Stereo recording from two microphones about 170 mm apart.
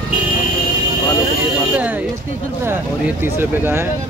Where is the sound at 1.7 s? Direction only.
10° right (ahead or behind).